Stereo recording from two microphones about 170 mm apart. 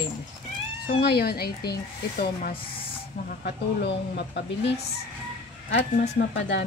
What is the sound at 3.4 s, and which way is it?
Speech, 90° left.